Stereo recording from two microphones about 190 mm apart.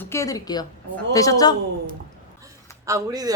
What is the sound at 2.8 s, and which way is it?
Speech, 20° right (ahead or behind).